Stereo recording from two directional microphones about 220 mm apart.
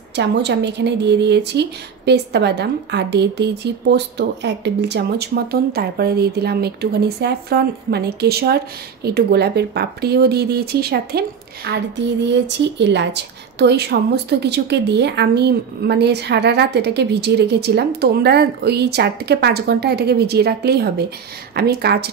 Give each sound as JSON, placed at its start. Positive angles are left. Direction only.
{"t": 0.1, "sound": "a woman's voice", "side_deg": -50}